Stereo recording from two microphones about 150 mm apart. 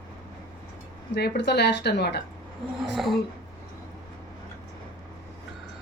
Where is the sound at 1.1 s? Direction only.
90° left.